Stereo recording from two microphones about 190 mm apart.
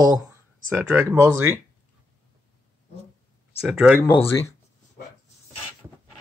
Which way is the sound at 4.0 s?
25° left (ahead or behind).